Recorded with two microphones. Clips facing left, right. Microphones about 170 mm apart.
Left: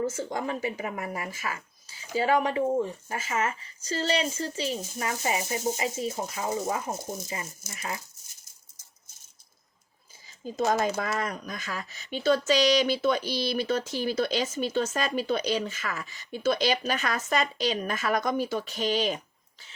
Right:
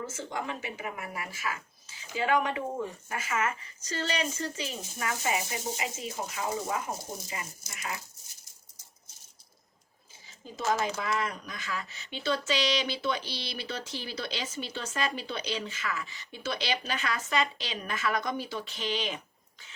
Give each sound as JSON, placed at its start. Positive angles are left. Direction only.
{"t": 0.0, "sound": "speech", "side_deg": 40}
{"t": 6.9, "sound": "speech", "side_deg": 25}
{"t": 10.7, "sound": "speech", "side_deg": 45}